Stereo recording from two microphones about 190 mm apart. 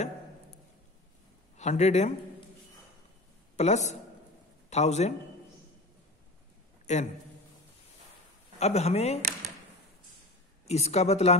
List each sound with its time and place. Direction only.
1.6 s speech: 35° left (ahead or behind)
3.5 s a man's voice: 35° left (ahead or behind)
6.9 s speech: 40° left (ahead or behind)
8.5 s speech: 35° left (ahead or behind)
10.7 s speech: 35° left (ahead or behind)